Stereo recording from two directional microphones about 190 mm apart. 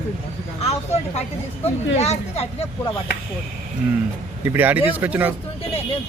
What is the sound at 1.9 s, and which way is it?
Speech, 35° left (ahead or behind).